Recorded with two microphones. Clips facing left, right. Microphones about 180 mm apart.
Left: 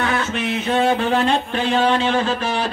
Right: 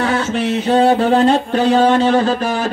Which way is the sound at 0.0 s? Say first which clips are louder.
Right 5 dB; 35° right (ahead or behind).